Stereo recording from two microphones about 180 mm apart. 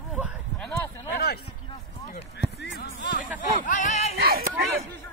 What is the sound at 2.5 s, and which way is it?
Basketball bounce, 60° left (ahead or behind).